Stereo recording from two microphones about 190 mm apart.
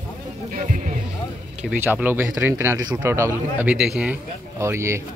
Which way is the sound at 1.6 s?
10° right (ahead or behind).